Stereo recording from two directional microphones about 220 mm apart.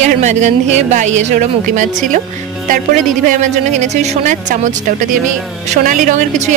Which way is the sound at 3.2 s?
35° right (ahead or behind).